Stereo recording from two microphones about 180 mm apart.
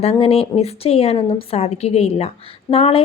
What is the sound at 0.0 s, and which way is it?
A woman's voice, 35° left (ahead or behind).